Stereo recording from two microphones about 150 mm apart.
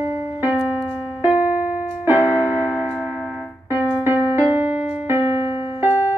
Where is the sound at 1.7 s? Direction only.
10° right (ahead or behind).